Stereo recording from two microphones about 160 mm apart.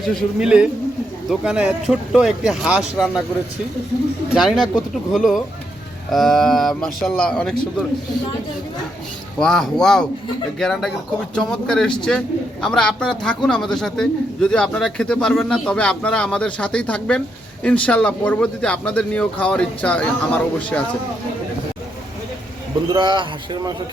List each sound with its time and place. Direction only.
0.0 s speech: centre (ahead or behind)
4.4 s speech: centre (ahead or behind)
9.4 s a man's voice: 5° left (ahead or behind)
22.9 s a man's voice: 30° right (ahead or behind)